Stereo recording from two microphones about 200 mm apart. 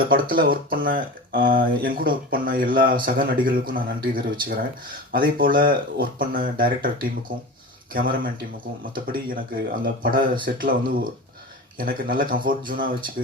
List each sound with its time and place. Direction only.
0.0 s speech: 45° right (ahead or behind)
11.8 s speech: 45° right (ahead or behind)